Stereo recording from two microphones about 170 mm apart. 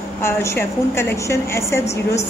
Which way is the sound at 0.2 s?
15° left (ahead or behind).